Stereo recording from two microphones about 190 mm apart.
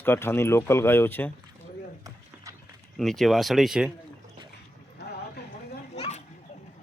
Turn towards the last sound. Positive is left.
turn(degrees=35)  # may be behind; listen again after turning